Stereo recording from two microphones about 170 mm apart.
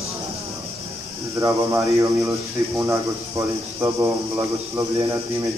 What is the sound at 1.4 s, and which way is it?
Speech, 15° right (ahead or behind).